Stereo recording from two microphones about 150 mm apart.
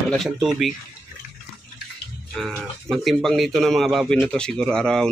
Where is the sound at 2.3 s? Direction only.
5° left (ahead or behind).